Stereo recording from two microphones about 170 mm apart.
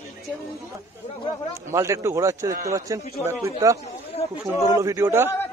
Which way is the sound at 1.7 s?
15° right (ahead or behind).